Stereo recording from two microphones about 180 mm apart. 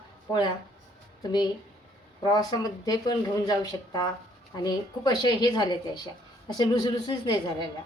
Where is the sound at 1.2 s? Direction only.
25° left (ahead or behind).